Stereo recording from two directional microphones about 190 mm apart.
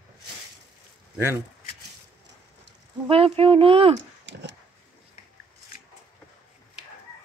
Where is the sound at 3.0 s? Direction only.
30° right (ahead or behind).